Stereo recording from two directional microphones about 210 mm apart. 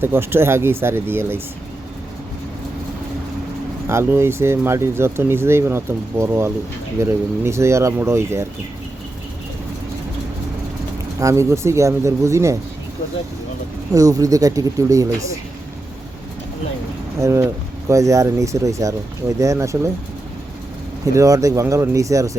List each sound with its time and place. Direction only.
0.0 s speech: 10° right (ahead or behind)
3.8 s speech: 10° right (ahead or behind)
11.2 s speech: 15° right (ahead or behind)
13.9 s speech: 15° right (ahead or behind)
17.2 s speech: 15° right (ahead or behind)
21.0 s speech: 15° right (ahead or behind)